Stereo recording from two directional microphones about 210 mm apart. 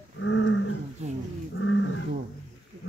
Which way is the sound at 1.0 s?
30° right (ahead or behind).